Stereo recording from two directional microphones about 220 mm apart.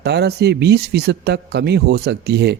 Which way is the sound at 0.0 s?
50° right (ahead or behind).